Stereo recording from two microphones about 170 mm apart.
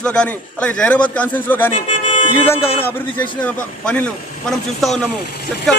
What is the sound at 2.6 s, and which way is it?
Speech, 35° left (ahead or behind).